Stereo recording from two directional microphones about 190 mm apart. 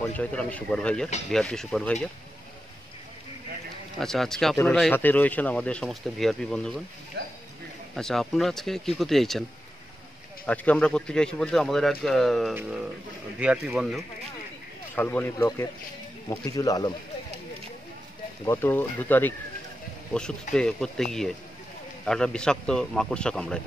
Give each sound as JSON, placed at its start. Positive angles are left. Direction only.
{"t": 0.0, "sound": "speech", "side_deg": 5}
{"t": 4.0, "sound": "speech", "side_deg": 0}
{"t": 7.2, "sound": "speech", "side_deg": -60}
{"t": 7.9, "sound": "speech", "side_deg": 0}
{"t": 10.4, "sound": "speech", "side_deg": 5}
{"t": 15.0, "sound": "speech", "side_deg": 10}
{"t": 18.4, "sound": "speech", "side_deg": 10}
{"t": 20.5, "sound": "speech", "side_deg": 5}